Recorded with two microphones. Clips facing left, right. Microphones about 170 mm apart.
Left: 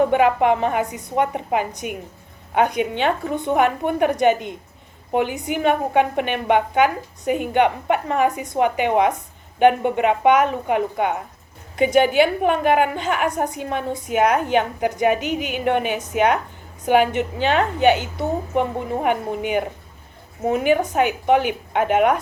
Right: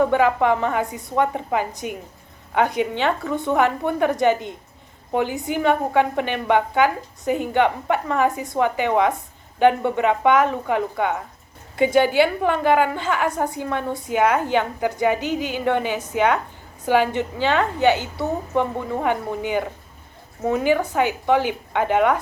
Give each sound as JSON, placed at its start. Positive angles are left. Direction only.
{"t": 0.0, "sound": "a woman's voice", "side_deg": 20}